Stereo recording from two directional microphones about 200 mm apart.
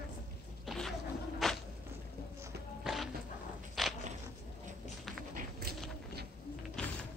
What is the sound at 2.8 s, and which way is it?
Music, centre (ahead or behind).